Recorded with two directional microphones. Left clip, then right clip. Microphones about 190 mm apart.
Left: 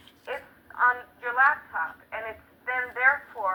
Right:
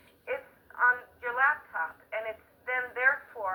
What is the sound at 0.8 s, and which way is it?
Speech, 40° left (ahead or behind).